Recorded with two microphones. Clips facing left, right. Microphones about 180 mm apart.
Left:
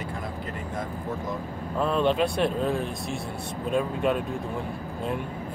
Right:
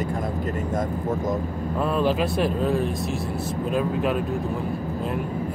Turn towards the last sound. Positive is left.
turn(degrees=0)  # may be behind; listen again after turning